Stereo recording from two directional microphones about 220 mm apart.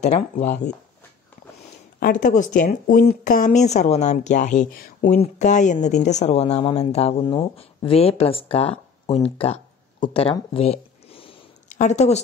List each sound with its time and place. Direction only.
0.0 s speech: 30° left (ahead or behind)
2.0 s speech: 40° left (ahead or behind)